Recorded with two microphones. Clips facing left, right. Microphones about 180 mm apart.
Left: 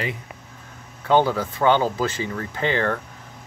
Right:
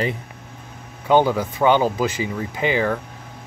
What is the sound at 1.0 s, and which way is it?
Speech, 15° right (ahead or behind).